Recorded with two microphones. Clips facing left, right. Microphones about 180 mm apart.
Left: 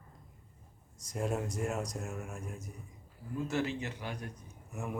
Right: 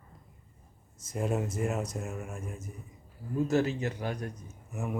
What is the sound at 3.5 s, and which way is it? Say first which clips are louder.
Speech: right 6 dB; 40° right (ahead or behind).